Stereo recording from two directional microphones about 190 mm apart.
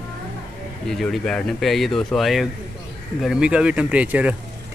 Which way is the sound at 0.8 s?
Centre (ahead or behind).